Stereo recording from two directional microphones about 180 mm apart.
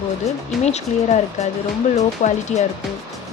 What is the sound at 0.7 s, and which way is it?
Speech, 40° left (ahead or behind).